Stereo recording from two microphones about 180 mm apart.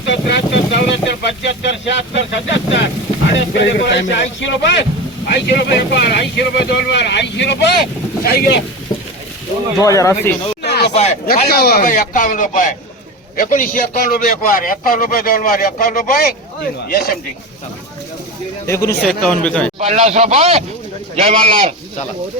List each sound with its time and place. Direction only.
0.0 s speech: 80° left
3.5 s speech: 70° left (ahead or behind)
5.3 s speech: 70° left (ahead or behind)
8.2 s speech: 60° left (ahead or behind)
9.8 s speech: 20° left (ahead or behind)
10.6 s a sound: 65° left (ahead or behind)
10.9 s speech: 35° left (ahead or behind)
11.4 s a man's voice: 60° left (ahead or behind)
18.6 s speech: 15° left (ahead or behind)
19.0 s speech: 5° left (ahead or behind)
19.8 s speech: 35° right (ahead or behind)